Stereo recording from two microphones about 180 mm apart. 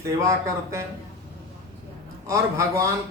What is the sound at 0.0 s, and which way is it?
Speech, 15° right (ahead or behind).